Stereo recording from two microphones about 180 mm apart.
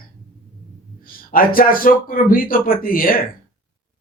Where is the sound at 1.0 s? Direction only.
50° left (ahead or behind).